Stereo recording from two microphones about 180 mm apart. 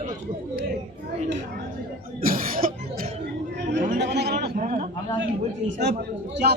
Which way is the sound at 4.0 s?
70° right (ahead or behind).